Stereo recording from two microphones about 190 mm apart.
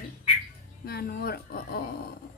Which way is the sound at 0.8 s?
55° left (ahead or behind).